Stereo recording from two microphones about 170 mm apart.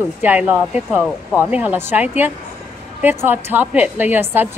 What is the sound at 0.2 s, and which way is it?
Speech, 10° right (ahead or behind).